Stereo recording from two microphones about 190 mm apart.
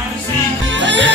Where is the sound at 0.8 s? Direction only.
70° right (ahead or behind).